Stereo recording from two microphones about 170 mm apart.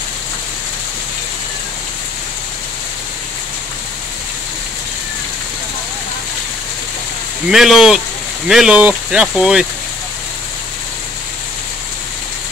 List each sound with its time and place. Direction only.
7.4 s speech: centre (ahead or behind)